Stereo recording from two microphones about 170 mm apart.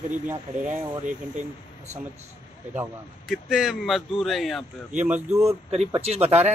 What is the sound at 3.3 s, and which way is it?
Speech, centre (ahead or behind).